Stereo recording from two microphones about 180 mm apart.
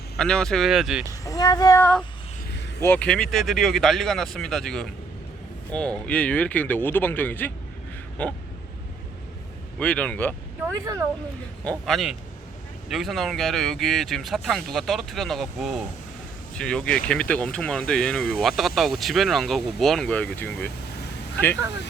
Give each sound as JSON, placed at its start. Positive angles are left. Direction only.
{"t": 0.2, "sound": "speech", "side_deg": 5}
{"t": 1.2, "sound": "speech", "side_deg": 20}
{"t": 2.8, "sound": "speech", "side_deg": 10}
{"t": 9.7, "sound": "speech", "side_deg": 5}
{"t": 11.6, "sound": "speech", "side_deg": 5}